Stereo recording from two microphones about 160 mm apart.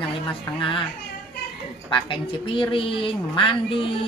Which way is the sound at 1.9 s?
30° left (ahead or behind).